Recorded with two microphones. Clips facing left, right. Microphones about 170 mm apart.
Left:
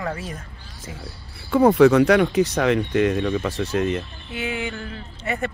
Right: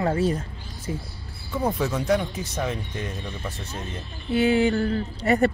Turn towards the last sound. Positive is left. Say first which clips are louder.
# right 7 dB
turn(degrees=-35)  # may be behind; listen again after turning